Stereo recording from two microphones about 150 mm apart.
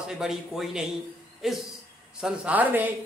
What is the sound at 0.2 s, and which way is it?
A man's voice, centre (ahead or behind).